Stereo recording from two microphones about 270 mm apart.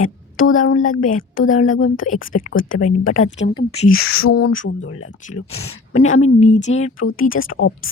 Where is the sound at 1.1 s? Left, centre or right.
Left.